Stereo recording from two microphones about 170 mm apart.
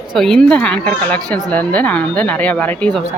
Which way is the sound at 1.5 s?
10° left (ahead or behind).